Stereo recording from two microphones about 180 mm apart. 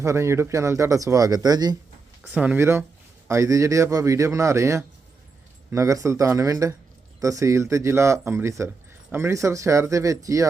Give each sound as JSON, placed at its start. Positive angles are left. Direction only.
{"t": 0.0, "sound": "speech", "side_deg": -15}
{"t": 2.2, "sound": "speech", "side_deg": -5}